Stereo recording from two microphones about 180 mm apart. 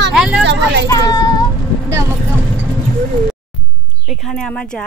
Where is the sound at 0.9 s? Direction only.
20° left (ahead or behind).